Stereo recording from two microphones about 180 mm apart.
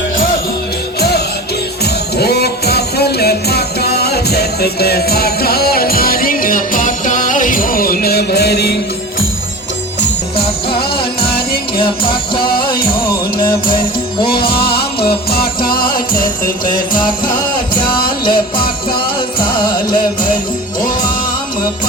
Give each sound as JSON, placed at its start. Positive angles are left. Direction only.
{"t": 0.9, "sound": "music", "side_deg": 60}
{"t": 10.3, "sound": "music", "side_deg": 30}
{"t": 12.5, "sound": "music", "side_deg": 55}
{"t": 14.6, "sound": "music", "side_deg": 60}
{"t": 18.3, "sound": "music", "side_deg": 30}